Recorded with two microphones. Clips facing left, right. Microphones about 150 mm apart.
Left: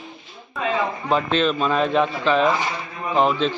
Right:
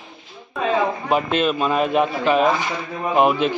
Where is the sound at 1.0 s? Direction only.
10° right (ahead or behind).